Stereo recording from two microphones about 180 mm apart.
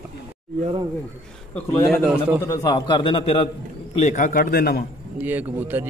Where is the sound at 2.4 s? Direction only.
25° left (ahead or behind).